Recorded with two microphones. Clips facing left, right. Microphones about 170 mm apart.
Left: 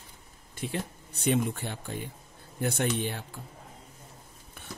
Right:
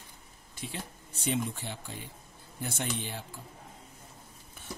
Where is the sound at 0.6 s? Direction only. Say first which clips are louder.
Left 7 dB; 60° left (ahead or behind).